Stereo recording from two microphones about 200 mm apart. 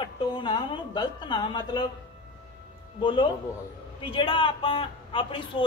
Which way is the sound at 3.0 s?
25° left (ahead or behind).